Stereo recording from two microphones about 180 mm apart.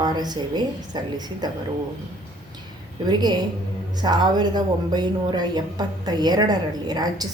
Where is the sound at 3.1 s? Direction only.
25° right (ahead or behind).